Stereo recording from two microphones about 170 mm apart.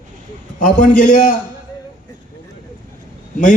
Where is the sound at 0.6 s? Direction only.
50° left (ahead or behind).